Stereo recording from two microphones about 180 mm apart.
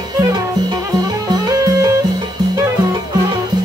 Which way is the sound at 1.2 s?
20° right (ahead or behind).